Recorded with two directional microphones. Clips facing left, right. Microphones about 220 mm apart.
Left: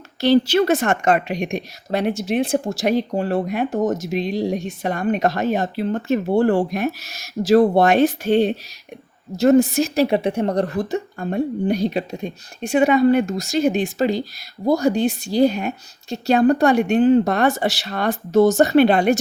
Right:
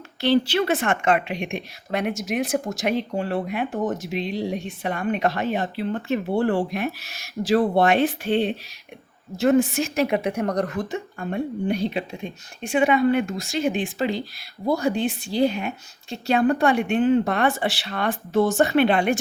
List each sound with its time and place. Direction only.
0.2 s a woman's voice: 40° left (ahead or behind)